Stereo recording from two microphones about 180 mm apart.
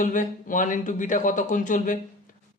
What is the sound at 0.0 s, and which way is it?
A man's voice, 45° left (ahead or behind).